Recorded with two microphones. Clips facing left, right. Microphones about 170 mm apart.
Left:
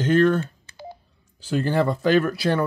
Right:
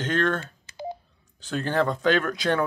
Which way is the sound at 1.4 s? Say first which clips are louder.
Left 3 dB; 10° left (ahead or behind).